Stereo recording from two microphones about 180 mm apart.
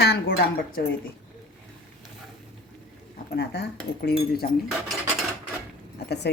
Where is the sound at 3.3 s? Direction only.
70° left (ahead or behind).